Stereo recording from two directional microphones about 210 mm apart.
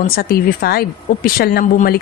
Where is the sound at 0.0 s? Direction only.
45° left (ahead or behind).